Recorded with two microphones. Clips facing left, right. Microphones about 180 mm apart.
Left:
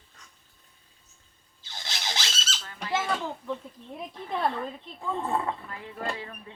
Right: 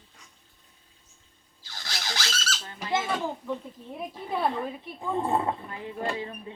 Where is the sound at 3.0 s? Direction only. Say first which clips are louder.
Right 1 dB; 5° right (ahead or behind).